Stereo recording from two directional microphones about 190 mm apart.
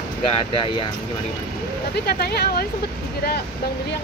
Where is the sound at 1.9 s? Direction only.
55° left (ahead or behind).